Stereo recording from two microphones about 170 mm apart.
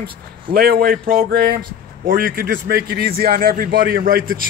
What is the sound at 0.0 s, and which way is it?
A man's voice, 65° right (ahead or behind).